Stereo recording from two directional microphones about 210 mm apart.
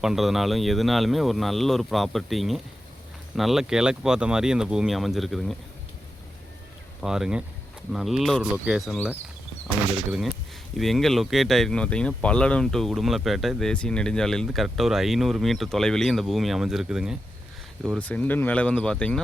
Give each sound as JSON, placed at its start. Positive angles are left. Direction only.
{"t": 0.0, "sound": "speech", "side_deg": 0}
{"t": 7.0, "sound": "speech", "side_deg": 0}
{"t": 10.1, "sound": "speech", "side_deg": 0}